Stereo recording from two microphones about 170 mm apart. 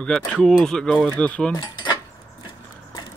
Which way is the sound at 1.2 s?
5° left (ahead or behind).